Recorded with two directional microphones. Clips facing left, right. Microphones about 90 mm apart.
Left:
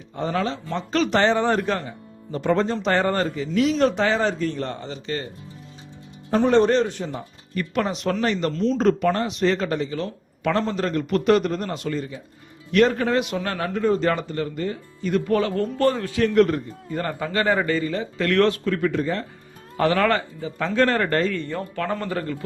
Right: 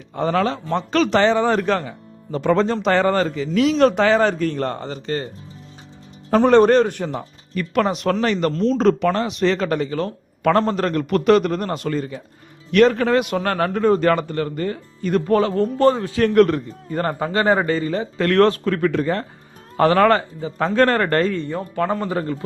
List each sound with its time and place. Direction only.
0.2 s a man's voice: 70° right (ahead or behind); by 5.3 s 40° right (ahead or behind)
6.4 s speech: 60° right (ahead or behind)
8.2 s a man's voice: 75° right (ahead or behind)
8.8 s a man's voice: 90° right; by 11.8 s 65° right (ahead or behind)
11.8 s speech: 50° right (ahead or behind)
12.7 s speech: 90° right
13.2 s speech: 60° right (ahead or behind)
14.1 s speech: 70° right (ahead or behind); by 16.2 s 25° right (ahead or behind)
16.2 s speech: 55° right (ahead or behind)
16.9 s a man's voice: 40° right (ahead or behind)
18.6 s speech: 55° right (ahead or behind)
19.7 s a man's voice: 40° right (ahead or behind)
21.2 s a man's voice: 25° right (ahead or behind)